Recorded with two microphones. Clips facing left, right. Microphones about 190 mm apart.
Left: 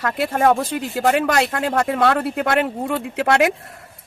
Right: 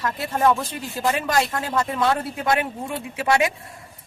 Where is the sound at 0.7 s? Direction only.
70° left (ahead or behind).